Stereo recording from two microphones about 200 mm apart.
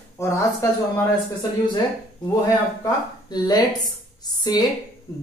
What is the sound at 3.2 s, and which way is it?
Speech, 20° left (ahead or behind).